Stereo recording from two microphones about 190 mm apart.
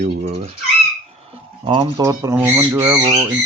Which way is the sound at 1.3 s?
30° right (ahead or behind).